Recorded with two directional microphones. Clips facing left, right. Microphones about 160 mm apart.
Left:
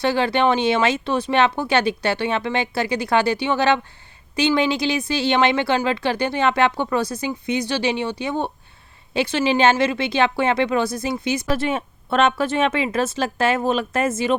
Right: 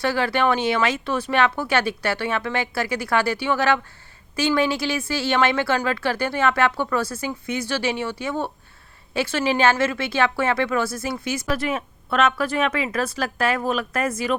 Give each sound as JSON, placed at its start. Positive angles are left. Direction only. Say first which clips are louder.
{"t": 0.0, "sound": "speech", "louder": "left 3 dB", "side_deg": 20}